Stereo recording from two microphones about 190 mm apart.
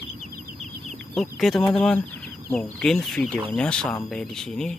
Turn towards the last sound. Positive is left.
turn(degrees=5)  # may be behind; listen again after turning